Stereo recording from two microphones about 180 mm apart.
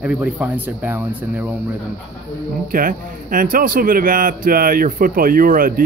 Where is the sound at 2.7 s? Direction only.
50° right (ahead or behind).